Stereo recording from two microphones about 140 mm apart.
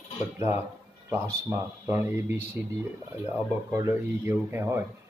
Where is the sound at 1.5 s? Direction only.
20° right (ahead or behind).